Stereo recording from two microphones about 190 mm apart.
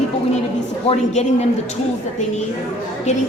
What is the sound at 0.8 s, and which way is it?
Speech, 35° left (ahead or behind).